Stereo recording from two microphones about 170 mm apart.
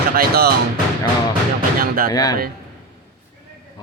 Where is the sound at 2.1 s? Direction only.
20° left (ahead or behind).